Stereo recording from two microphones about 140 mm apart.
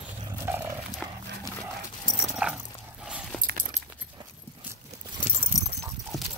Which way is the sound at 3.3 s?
90° right.